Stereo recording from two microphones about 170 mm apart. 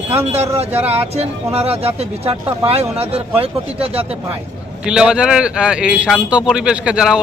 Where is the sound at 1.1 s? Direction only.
35° right (ahead or behind).